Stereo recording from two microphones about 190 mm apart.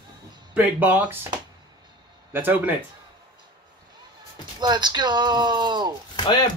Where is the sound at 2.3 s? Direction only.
10° right (ahead or behind).